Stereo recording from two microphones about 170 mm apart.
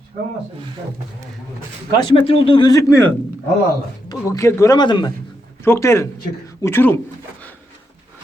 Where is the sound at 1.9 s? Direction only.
35° left (ahead or behind).